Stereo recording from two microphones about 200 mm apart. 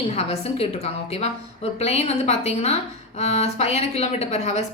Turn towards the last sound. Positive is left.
turn(degrees=35)  # may be behind; listen again after turning